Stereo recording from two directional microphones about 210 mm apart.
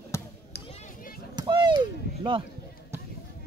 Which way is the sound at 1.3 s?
20° right (ahead or behind).